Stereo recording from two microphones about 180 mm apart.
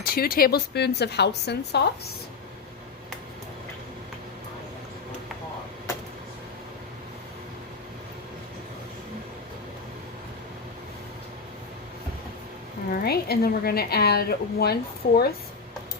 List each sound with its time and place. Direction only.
0.0 s a woman's voice: 55° left (ahead or behind)
12.9 s a woman's voice: 60° left (ahead or behind)